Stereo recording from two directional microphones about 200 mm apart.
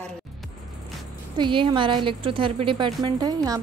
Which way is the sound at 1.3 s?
25° right (ahead or behind).